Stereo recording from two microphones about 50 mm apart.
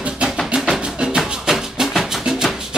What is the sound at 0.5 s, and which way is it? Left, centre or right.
Music, centre.